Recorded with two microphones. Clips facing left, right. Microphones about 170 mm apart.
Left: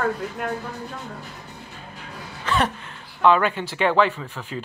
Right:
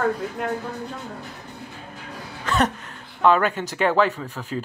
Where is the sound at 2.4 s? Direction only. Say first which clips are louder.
Right 1 dB; 40° right (ahead or behind).